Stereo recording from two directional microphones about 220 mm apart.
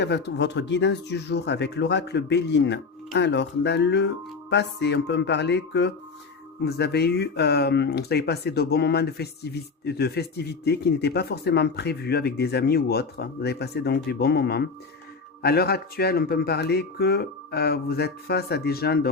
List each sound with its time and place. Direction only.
0.0 s speech: 50° left (ahead or behind)